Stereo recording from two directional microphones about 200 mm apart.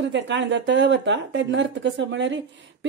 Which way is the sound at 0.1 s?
65° right (ahead or behind).